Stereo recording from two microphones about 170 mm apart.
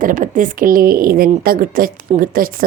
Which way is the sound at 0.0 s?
50° right (ahead or behind).